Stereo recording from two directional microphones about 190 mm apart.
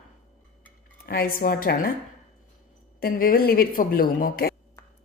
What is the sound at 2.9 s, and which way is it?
A woman's voice, 50° left (ahead or behind).